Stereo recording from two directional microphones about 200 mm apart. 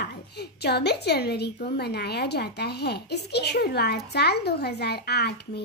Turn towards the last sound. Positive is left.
turn(degrees=55)  # may be behind; listen again after turning